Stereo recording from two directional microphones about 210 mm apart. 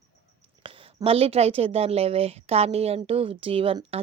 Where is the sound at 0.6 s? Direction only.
25° right (ahead or behind).